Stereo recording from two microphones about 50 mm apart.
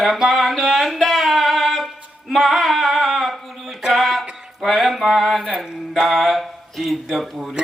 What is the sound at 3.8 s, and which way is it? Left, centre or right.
Music, centre.